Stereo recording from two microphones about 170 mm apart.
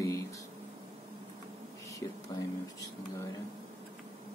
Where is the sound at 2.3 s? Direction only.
20° left (ahead or behind).